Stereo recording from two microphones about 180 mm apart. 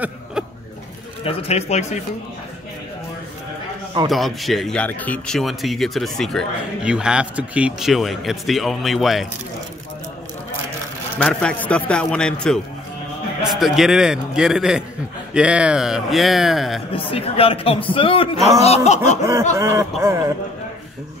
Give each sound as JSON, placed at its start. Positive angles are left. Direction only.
{"t": 0.0, "sound": "a sound", "side_deg": -5}
{"t": 1.2, "sound": "a man's voice", "side_deg": 35}
{"t": 4.1, "sound": "speech", "side_deg": 0}
{"t": 11.1, "sound": "speech", "side_deg": 5}
{"t": 16.9, "sound": "a man's voice", "side_deg": 30}
{"t": 19.5, "sound": "speech", "side_deg": -15}